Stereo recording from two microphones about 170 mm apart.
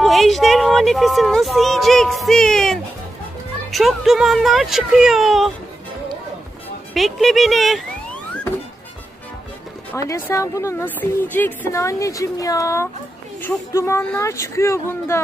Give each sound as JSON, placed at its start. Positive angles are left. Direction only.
{"t": 0.0, "sound": "speech", "side_deg": 0}
{"t": 6.9, "sound": "speech", "side_deg": 0}
{"t": 9.9, "sound": "a woman's voice", "side_deg": 15}